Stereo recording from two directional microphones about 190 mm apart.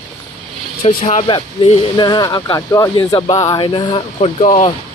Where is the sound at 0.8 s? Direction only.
30° left (ahead or behind).